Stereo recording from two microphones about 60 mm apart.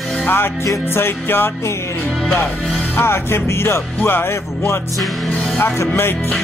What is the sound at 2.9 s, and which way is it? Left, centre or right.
Music, left.